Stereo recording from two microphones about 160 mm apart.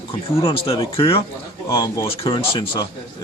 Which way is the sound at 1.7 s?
20° left (ahead or behind).